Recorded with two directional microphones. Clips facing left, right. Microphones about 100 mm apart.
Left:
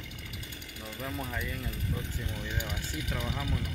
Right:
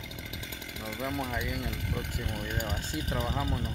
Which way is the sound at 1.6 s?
85° right.